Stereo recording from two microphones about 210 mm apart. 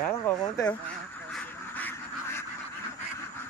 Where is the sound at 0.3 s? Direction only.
10° left (ahead or behind).